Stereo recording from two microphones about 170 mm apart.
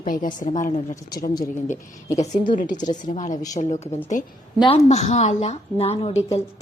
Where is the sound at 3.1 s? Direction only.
45° left (ahead or behind).